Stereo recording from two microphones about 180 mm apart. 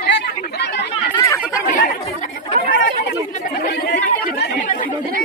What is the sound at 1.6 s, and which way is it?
Chatter, 50° left (ahead or behind).